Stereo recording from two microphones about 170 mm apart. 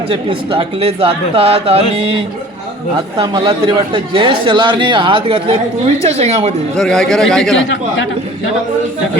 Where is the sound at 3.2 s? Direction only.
30° right (ahead or behind).